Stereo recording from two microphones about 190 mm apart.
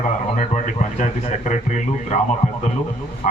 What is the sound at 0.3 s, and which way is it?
A man's voice, 40° left (ahead or behind).